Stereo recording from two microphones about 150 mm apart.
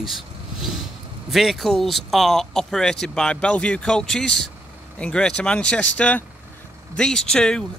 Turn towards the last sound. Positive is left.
turn(degrees=5)  # may be behind; listen again after turning